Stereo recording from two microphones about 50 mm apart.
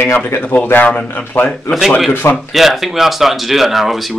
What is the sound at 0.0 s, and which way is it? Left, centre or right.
Speech, left.